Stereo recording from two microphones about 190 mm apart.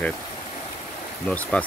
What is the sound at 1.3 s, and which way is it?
Speech, 5° left (ahead or behind).